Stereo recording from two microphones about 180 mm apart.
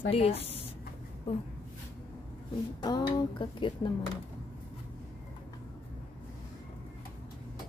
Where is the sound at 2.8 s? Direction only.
25° left (ahead or behind).